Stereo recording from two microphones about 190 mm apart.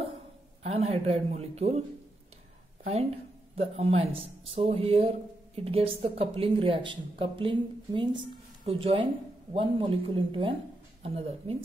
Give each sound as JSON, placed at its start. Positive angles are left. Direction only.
{"t": 0.7, "sound": "a man's voice", "side_deg": -30}
{"t": 3.5, "sound": "a man's voice", "side_deg": -35}